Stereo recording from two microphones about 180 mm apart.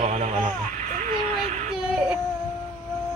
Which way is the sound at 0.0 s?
40° right (ahead or behind).